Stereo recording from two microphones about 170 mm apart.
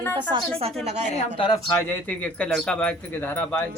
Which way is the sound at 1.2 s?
30° left (ahead or behind).